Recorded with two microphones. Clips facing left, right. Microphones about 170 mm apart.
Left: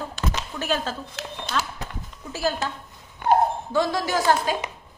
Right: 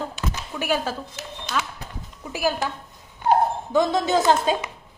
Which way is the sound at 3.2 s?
60° left (ahead or behind).